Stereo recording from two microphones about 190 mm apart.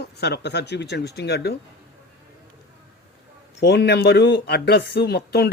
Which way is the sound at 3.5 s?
65° left (ahead or behind).